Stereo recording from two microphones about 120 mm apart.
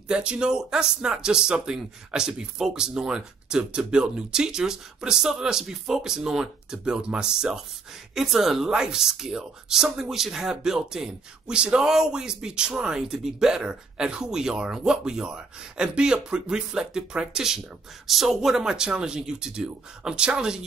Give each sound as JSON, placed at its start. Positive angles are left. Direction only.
{"t": 0.1, "sound": "speech", "side_deg": -5}